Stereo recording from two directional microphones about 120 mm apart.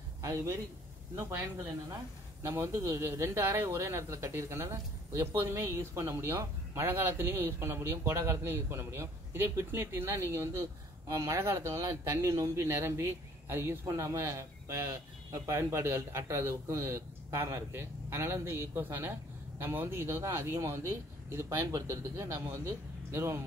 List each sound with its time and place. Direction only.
0.2 s a man's voice: 25° right (ahead or behind)
2.4 s speech: 20° right (ahead or behind)